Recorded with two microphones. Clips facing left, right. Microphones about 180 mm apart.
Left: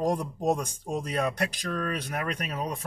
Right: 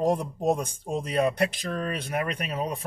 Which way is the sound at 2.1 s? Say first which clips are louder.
Right 3 dB; 5° right (ahead or behind).